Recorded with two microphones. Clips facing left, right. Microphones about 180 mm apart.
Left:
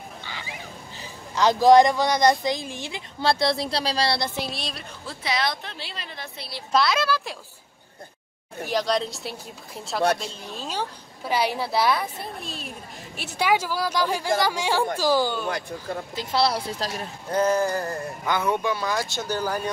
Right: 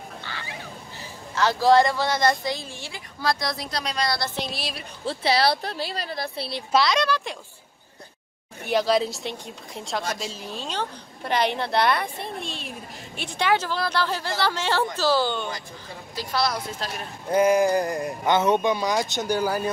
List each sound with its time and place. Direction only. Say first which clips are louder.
0.2 s fowl: right 1 dB; 15° left (ahead or behind)
1.3 s speech: left 3 dB; 15° left (ahead or behind)
4.4 s speech: even; centre (ahead or behind)
5.0 s speech: right 6 dB; 30° right (ahead or behind)
6.7 s speech: right 1 dB; centre (ahead or behind)
8.6 s a woman's voice: right 3 dB; 5° right (ahead or behind); by 15.4 s 10° left (ahead or behind)
16.2 s speech: left 2 dB; 25° left (ahead or behind)
17.3 s speech: right 3 dB; 10° right (ahead or behind)